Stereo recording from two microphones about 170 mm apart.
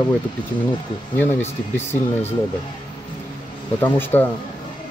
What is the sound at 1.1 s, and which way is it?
Speech, 10° left (ahead or behind).